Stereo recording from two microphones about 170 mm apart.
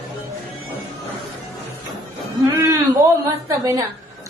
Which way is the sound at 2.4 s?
15° right (ahead or behind).